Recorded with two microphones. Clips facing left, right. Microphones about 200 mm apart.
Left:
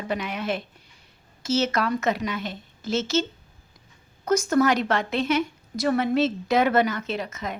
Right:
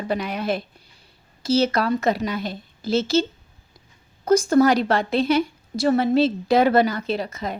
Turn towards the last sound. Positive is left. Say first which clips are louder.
# right 4 dB
turn(degrees=-35)  # may be behind; listen again after turning